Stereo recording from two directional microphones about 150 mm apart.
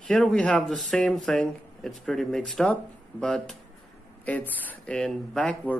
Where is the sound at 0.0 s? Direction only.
5° left (ahead or behind).